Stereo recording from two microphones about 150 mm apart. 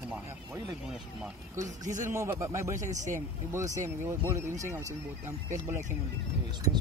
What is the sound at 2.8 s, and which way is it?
Speech, 55° right (ahead or behind).